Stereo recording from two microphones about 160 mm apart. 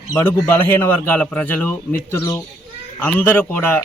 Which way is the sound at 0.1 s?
15° left (ahead or behind).